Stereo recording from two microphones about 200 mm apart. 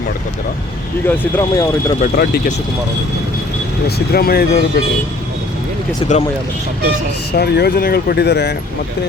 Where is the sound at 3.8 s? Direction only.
50° left (ahead or behind).